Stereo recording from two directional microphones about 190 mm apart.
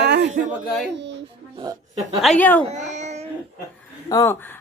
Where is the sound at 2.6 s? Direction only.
35° right (ahead or behind).